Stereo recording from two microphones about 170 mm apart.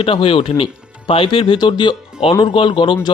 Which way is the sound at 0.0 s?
30° left (ahead or behind).